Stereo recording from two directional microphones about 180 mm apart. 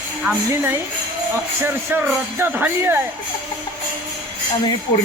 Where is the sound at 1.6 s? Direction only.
10° right (ahead or behind).